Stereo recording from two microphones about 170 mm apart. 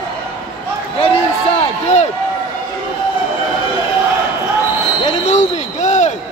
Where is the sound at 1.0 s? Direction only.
35° left (ahead or behind).